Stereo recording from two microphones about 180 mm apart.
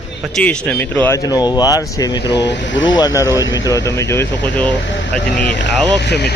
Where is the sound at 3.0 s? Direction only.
20° left (ahead or behind).